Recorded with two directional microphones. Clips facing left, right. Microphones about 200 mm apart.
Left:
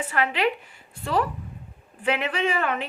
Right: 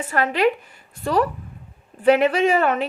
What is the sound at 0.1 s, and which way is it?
Speech, 45° right (ahead or behind).